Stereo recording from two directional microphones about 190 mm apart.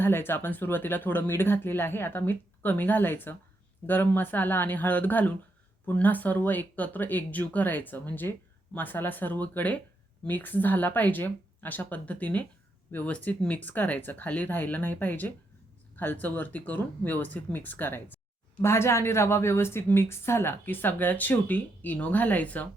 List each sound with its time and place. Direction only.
0.0 s speech: 10° left (ahead or behind)